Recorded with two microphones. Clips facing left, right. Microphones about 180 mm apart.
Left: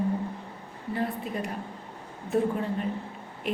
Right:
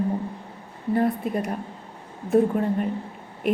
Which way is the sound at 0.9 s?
50° right (ahead or behind).